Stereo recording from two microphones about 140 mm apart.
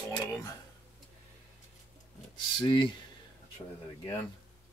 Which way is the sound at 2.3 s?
35° left (ahead or behind).